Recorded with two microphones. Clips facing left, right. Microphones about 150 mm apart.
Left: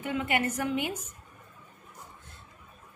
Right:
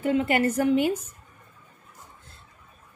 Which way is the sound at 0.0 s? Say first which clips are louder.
Right 7 dB; 35° right (ahead or behind).